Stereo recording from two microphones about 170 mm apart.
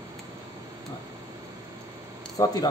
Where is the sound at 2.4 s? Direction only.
20° left (ahead or behind).